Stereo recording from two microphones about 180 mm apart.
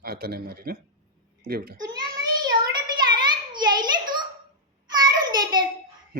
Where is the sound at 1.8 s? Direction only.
20° right (ahead or behind).